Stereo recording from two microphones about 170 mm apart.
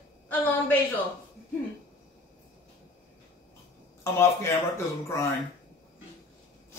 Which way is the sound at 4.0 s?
15° left (ahead or behind).